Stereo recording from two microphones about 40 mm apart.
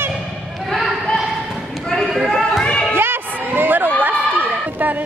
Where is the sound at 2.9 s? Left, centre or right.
Right.